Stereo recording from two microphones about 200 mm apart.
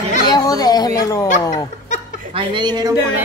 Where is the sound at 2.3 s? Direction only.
25° right (ahead or behind).